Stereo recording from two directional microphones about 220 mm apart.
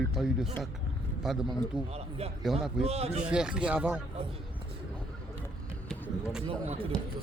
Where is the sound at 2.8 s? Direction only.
30° right (ahead or behind).